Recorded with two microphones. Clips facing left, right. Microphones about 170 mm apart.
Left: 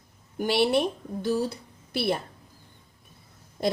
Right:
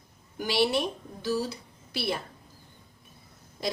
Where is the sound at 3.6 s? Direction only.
55° left (ahead or behind).